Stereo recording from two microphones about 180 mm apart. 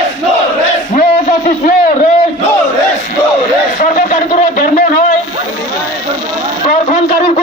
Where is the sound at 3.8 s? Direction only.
45° left (ahead or behind).